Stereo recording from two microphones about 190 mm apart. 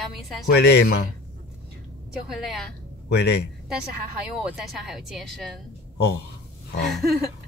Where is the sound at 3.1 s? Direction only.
60° left (ahead or behind).